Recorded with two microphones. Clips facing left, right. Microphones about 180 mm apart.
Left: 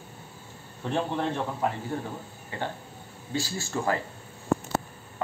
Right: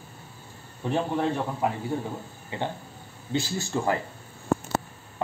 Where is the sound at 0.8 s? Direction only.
10° right (ahead or behind).